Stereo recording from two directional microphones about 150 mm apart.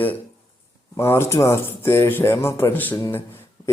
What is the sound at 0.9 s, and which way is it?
Speech, 15° left (ahead or behind).